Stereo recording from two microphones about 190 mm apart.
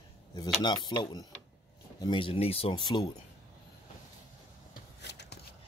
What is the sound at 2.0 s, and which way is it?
Speech, 25° left (ahead or behind).